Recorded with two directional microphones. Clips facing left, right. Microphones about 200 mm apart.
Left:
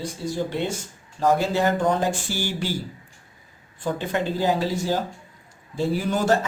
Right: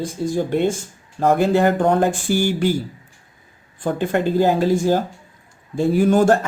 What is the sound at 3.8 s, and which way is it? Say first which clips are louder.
Speech: right 6 dB; 50° right (ahead or behind).